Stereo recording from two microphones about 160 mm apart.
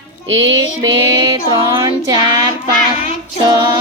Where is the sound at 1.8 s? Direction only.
25° right (ahead or behind).